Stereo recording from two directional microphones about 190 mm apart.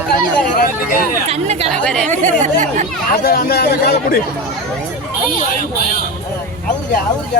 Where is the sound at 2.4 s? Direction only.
40° right (ahead or behind).